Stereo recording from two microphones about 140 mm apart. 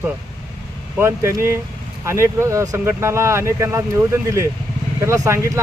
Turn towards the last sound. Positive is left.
turn(degrees=-20)  # may be behind; listen again after turning